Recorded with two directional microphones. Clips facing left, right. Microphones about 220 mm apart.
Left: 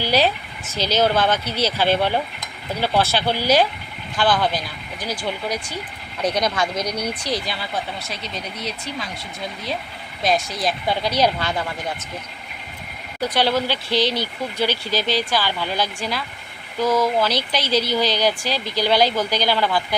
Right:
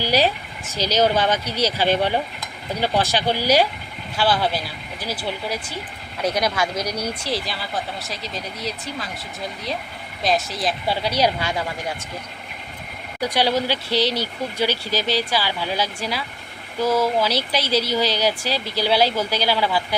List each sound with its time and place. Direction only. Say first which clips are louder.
0.0 s speech: even; 10° right (ahead or behind)
10.2 s speech: left 1 dB; centre (ahead or behind)
13.2 s speech: even; 10° right (ahead or behind)